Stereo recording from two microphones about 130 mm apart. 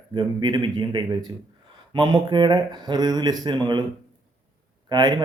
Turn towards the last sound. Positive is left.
turn(degrees=-35)  # may be behind; listen again after turning